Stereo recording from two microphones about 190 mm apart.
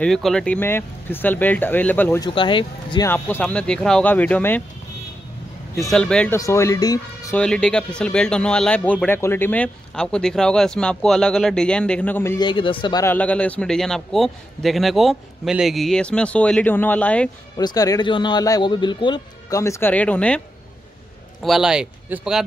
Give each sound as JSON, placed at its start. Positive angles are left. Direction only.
{"t": 0.0, "sound": "speech", "side_deg": 0}
{"t": 2.2, "sound": "a man's voice", "side_deg": 25}
{"t": 3.1, "sound": "speech", "side_deg": 10}
{"t": 5.8, "sound": "a man's voice", "side_deg": 0}
{"t": 6.3, "sound": "speech", "side_deg": 15}
{"t": 7.3, "sound": "a man's voice", "side_deg": 5}
{"t": 12.4, "sound": "a man's voice", "side_deg": 25}
{"t": 13.0, "sound": "a man's voice", "side_deg": 10}
{"t": 17.6, "sound": "a man's voice", "side_deg": 20}